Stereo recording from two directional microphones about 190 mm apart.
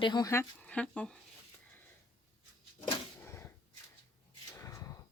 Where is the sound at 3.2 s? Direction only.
15° left (ahead or behind).